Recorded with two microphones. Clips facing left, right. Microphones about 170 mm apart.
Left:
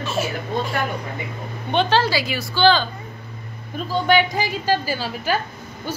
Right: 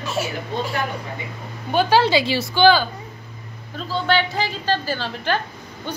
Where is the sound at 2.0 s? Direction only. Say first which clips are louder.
Right 4 dB; 20° right (ahead or behind).